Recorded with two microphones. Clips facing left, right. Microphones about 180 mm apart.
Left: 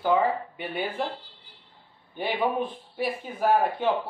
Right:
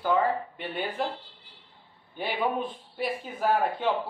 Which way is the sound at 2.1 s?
10° left (ahead or behind).